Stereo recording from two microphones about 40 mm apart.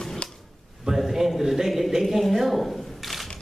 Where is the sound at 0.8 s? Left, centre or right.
Centre.